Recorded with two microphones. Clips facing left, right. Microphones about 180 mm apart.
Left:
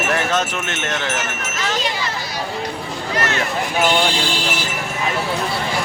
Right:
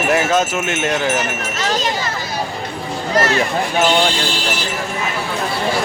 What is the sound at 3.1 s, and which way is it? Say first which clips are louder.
Speech: right 6 dB; 40° right (ahead or behind).